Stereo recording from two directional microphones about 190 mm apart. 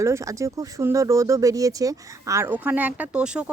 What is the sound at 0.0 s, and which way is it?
Speech, 15° right (ahead or behind).